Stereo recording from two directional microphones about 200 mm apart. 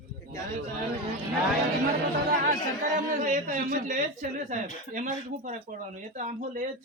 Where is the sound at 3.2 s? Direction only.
40° right (ahead or behind).